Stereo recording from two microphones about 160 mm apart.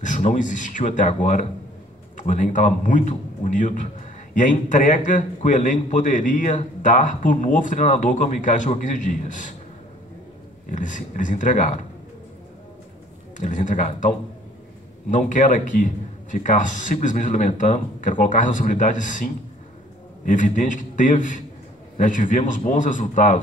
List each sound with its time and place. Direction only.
0.0 s a man's voice: 50° left (ahead or behind)
10.7 s a man's voice: 55° left (ahead or behind)
13.4 s a man's voice: 50° left (ahead or behind)